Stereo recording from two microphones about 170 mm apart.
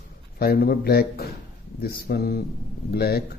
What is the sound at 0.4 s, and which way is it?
Speech, 65° left (ahead or behind).